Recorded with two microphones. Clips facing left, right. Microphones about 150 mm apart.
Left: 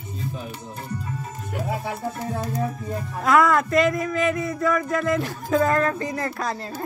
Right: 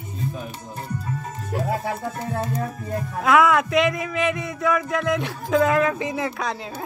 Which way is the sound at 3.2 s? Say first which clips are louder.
Right 1 dB; centre (ahead or behind).